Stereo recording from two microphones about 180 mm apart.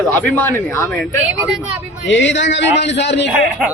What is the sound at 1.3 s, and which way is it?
Speech, 10° right (ahead or behind).